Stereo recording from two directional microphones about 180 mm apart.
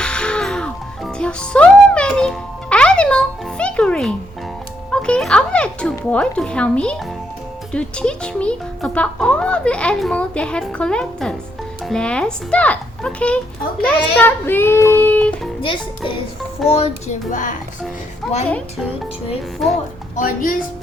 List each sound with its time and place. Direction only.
0.0 s music: 5° left (ahead or behind)
6.0 s a child's voice: 5° left (ahead or behind)
13.8 s child singing: 10° left (ahead or behind)
15.6 s a child's voice: 30° left (ahead or behind); by 17.6 s 45° left (ahead or behind)
18.2 s a child's voice: centre (ahead or behind)
19.6 s a child's voice: centre (ahead or behind)
20.1 s speech: 50° left (ahead or behind)